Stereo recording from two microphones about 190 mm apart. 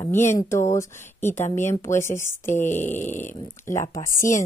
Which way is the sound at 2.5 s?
40° left (ahead or behind).